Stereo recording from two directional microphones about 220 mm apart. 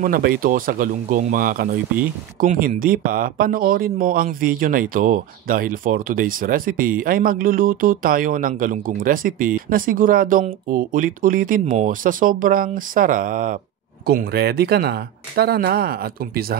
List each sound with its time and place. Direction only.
0.0 s speech: 40° right (ahead or behind)